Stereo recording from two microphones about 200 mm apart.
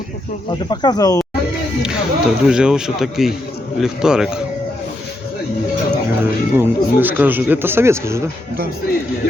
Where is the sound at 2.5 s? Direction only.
5° right (ahead or behind).